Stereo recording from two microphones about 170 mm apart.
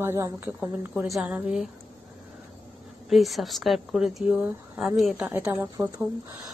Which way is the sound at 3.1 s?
Centre (ahead or behind).